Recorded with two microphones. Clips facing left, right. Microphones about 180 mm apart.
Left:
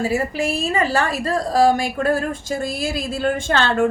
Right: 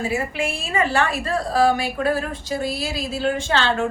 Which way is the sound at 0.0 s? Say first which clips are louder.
Left 3 dB; 40° left (ahead or behind).